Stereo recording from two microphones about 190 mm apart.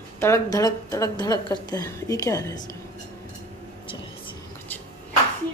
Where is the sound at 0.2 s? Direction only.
15° left (ahead or behind).